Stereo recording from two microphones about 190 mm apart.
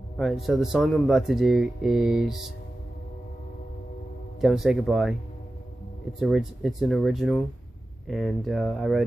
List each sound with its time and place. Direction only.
0.2 s speech: centre (ahead or behind)
4.4 s speech: centre (ahead or behind)
6.1 s speech: centre (ahead or behind)